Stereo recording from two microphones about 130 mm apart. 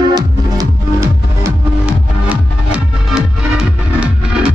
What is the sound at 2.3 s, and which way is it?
Music, 5° right (ahead or behind).